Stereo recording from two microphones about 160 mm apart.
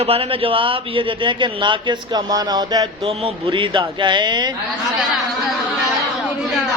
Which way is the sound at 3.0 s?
35° right (ahead or behind).